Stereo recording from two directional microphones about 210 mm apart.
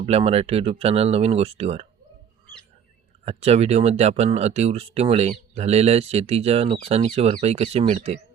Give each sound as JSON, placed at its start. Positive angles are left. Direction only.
{"t": 0.0, "sound": "speech", "side_deg": -30}
{"t": 3.2, "sound": "speech", "side_deg": -30}